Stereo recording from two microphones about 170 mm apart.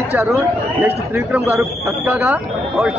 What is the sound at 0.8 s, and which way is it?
Speech, 10° right (ahead or behind).